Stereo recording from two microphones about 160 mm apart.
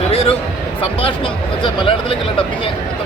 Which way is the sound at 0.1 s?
35° left (ahead or behind).